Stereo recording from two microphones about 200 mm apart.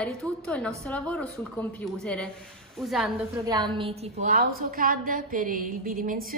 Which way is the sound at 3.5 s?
20° right (ahead or behind).